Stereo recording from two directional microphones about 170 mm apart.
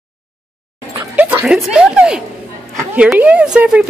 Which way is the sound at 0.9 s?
10° right (ahead or behind).